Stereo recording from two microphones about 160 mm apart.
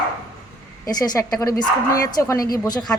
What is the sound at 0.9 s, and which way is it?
A woman's voice, 25° left (ahead or behind).